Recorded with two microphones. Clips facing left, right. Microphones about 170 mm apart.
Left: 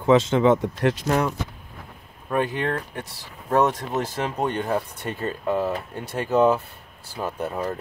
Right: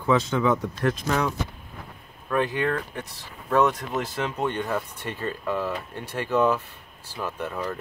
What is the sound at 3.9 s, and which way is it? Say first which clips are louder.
Speech: left 2 dB; 45° left (ahead or behind).